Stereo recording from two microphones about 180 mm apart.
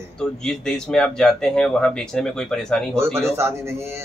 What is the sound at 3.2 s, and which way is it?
Speech, 15° right (ahead or behind).